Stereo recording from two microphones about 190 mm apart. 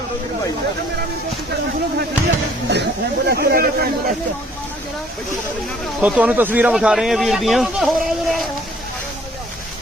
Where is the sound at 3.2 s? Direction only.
55° right (ahead or behind).